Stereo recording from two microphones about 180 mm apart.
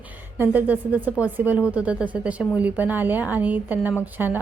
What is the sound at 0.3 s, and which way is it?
A woman's voice, 10° right (ahead or behind).